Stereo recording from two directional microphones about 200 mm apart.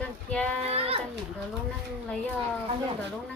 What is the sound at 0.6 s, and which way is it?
Speech, 30° right (ahead or behind).